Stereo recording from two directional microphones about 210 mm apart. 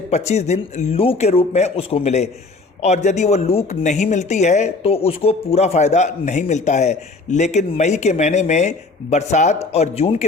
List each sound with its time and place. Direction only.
0.1 s speech: 30° left (ahead or behind)